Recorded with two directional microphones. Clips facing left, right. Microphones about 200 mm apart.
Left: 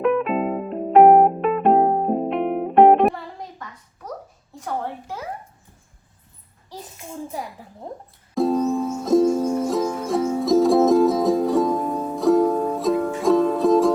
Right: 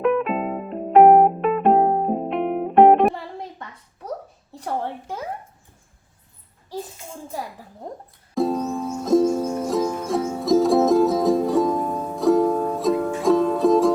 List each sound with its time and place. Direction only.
0.0 s music: centre (ahead or behind)
8.4 s music: centre (ahead or behind)